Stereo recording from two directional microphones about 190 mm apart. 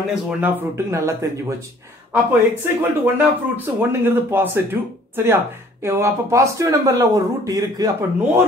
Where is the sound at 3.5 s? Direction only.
10° right (ahead or behind).